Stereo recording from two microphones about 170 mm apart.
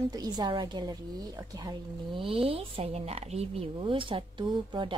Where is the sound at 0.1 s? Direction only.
25° right (ahead or behind).